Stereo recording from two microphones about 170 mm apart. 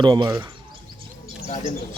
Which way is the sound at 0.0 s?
25° right (ahead or behind).